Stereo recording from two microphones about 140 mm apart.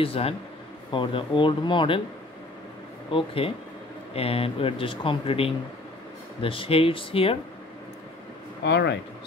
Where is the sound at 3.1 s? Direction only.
40° left (ahead or behind).